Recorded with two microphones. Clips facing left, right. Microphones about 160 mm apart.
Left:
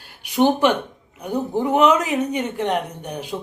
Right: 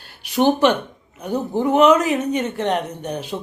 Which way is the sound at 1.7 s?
15° left (ahead or behind).